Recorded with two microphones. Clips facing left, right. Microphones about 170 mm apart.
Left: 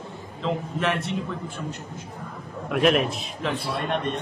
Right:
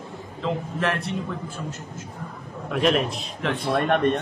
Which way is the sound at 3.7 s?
60° right (ahead or behind).